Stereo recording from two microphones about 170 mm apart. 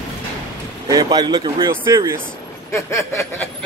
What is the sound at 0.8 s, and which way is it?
Speech, 25° right (ahead or behind).